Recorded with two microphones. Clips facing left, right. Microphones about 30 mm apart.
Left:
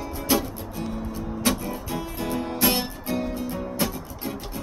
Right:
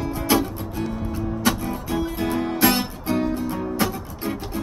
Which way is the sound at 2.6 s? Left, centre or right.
Centre.